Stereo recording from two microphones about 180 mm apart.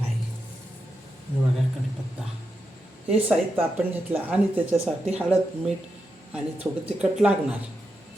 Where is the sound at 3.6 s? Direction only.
10° right (ahead or behind).